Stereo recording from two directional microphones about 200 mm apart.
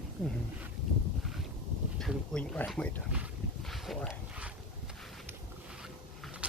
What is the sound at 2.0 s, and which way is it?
Speech, centre (ahead or behind).